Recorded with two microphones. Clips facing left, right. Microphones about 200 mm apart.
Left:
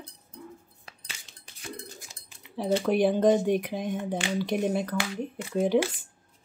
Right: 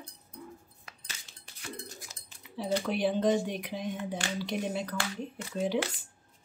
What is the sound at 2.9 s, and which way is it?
Speech, 50° left (ahead or behind).